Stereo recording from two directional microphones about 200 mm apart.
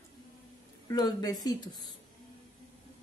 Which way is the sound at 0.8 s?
20° left (ahead or behind).